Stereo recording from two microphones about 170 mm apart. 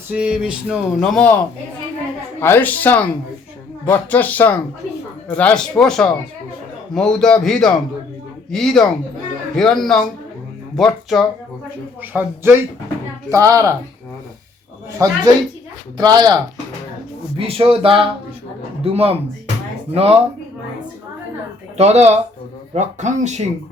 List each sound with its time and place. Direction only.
0.1 s a sound: 5° right (ahead or behind)
1.0 s a man's voice: 5° left (ahead or behind)
2.4 s a man's voice: 10° left (ahead or behind)
5.4 s a sound: 5° left (ahead or behind)
12.1 s speech: 15° right (ahead or behind)
14.9 s speech: 20° right (ahead or behind); by 20.1 s 35° right (ahead or behind)
21.8 s speech: 40° right (ahead or behind)